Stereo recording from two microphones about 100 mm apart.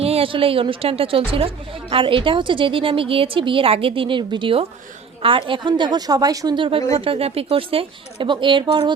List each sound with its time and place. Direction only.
0.0 s a woman's voice: 70° right (ahead or behind); by 6.6 s 40° right (ahead or behind)
6.6 s a woman's voice: 70° right (ahead or behind); by 8.9 s 50° right (ahead or behind)